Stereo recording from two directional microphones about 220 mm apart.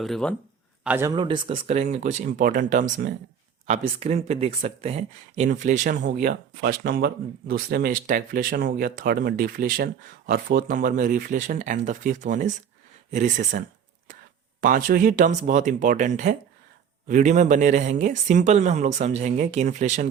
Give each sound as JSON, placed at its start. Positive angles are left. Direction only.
{"t": 0.0, "sound": "speech", "side_deg": 5}
{"t": 0.9, "sound": "speech", "side_deg": -10}
{"t": 1.1, "sound": "speech", "side_deg": -20}